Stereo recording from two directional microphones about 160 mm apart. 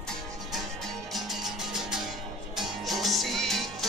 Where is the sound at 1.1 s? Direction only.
Centre (ahead or behind).